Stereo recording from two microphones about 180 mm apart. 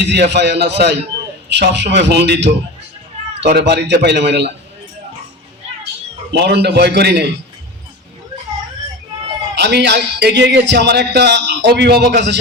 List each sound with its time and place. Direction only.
0.0 s a man's voice: 75° right (ahead or behind)
5.6 s a sound: 35° right (ahead or behind)
6.3 s a man's voice: 70° right (ahead or behind)
9.6 s a man's voice: 70° right (ahead or behind)